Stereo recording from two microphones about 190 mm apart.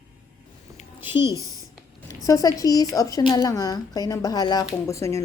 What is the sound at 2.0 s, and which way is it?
A woman's voice, 15° left (ahead or behind).